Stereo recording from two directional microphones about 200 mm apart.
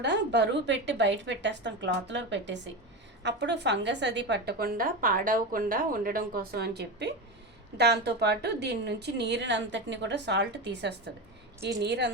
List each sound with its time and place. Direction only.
0.0 s a woman's voice: 60° right (ahead or behind)